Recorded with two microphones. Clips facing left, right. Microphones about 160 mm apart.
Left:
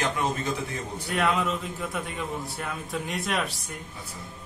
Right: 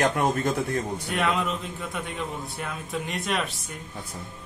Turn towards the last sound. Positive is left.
turn(degrees=0)  # may be behind; listen again after turning